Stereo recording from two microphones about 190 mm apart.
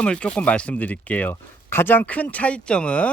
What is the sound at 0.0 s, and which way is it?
Speech, 5° left (ahead or behind).